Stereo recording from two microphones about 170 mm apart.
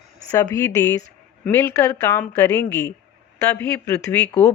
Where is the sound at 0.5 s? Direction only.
20° left (ahead or behind).